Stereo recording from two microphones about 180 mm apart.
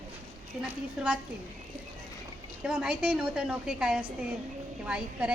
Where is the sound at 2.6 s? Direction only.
5° right (ahead or behind).